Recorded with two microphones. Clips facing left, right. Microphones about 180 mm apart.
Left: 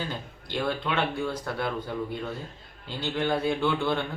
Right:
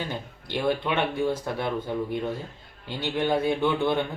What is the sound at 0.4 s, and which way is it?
A man's voice, 20° right (ahead or behind).